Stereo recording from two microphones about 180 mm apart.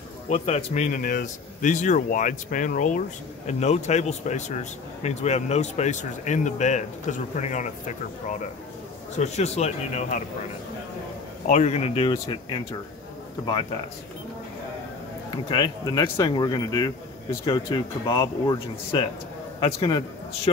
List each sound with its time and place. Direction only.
0.3 s speech: 40° left (ahead or behind)
11.4 s speech: 40° left (ahead or behind)
13.5 s speech: 30° left (ahead or behind)
15.4 s speech: 25° left (ahead or behind)